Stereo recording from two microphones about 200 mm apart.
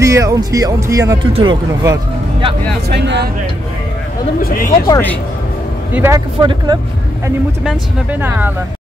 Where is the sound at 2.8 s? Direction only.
60° right (ahead or behind).